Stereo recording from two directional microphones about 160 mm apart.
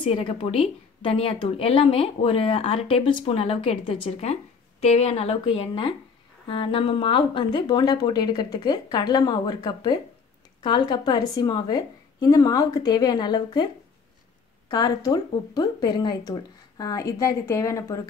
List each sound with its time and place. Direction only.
0.0 s a woman's voice: 35° left (ahead or behind)
14.7 s speech: 25° left (ahead or behind)